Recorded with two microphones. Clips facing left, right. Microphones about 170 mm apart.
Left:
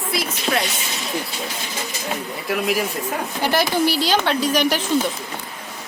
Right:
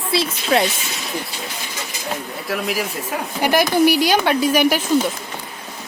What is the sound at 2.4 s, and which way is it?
Speech, centre (ahead or behind).